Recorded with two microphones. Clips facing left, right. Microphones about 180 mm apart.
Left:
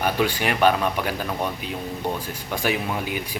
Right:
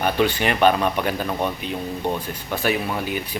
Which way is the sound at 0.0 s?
10° left (ahead or behind).